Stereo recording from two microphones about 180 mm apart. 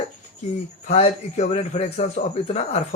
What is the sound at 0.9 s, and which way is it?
Speech, 35° left (ahead or behind).